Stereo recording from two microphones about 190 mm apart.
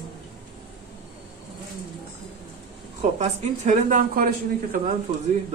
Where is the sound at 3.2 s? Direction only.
40° right (ahead or behind).